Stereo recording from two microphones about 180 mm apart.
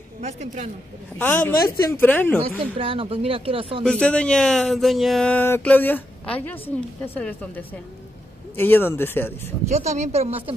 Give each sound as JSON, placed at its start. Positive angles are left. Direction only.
{"t": 0.2, "sound": "speech", "side_deg": -35}
{"t": 1.1, "sound": "speech", "side_deg": 10}
{"t": 2.8, "sound": "speech", "side_deg": -30}
{"t": 3.8, "sound": "speech", "side_deg": 5}
{"t": 9.7, "sound": "speech", "side_deg": -40}